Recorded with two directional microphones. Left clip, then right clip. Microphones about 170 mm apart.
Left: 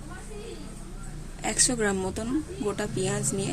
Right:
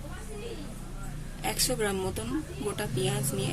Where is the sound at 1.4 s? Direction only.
45° left (ahead or behind).